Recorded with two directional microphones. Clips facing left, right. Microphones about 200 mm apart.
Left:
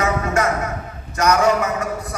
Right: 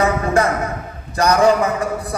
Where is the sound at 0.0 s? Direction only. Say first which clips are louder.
Right 3 dB; 35° right (ahead or behind).